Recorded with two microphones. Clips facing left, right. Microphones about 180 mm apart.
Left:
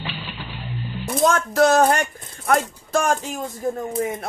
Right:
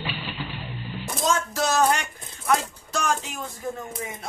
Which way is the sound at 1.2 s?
60° left (ahead or behind).